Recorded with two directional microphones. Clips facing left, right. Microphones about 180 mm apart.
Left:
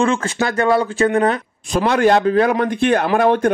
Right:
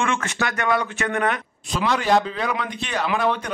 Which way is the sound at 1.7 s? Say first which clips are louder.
Left 6 dB; 50° left (ahead or behind).